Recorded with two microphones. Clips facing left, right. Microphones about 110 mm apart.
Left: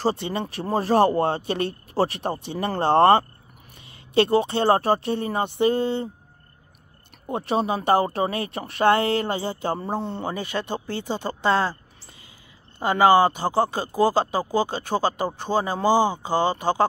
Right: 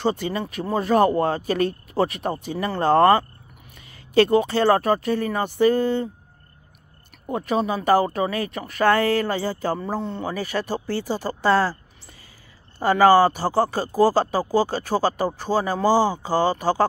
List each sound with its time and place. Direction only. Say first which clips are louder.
0.0 s speech: right 1 dB; 30° left (ahead or behind)
7.2 s speech: right 1 dB; 30° left (ahead or behind)